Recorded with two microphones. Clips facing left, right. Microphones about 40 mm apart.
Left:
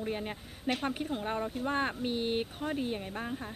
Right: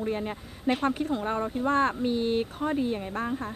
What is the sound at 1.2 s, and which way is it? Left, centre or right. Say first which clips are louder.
Speech: right 5 dB; centre.